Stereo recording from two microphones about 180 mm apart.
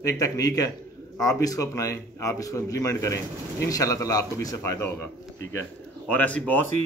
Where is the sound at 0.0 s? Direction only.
20° left (ahead or behind).